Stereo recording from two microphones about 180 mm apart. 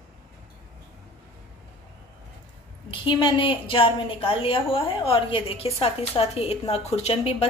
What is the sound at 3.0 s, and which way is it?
A woman's voice, 25° left (ahead or behind).